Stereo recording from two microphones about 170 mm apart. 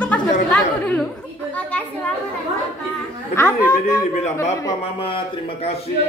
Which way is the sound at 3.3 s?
15° left (ahead or behind).